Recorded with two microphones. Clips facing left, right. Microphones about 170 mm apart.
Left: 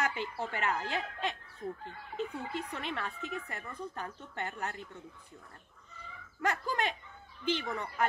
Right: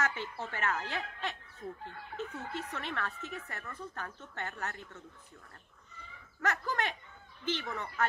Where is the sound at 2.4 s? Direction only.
15° left (ahead or behind).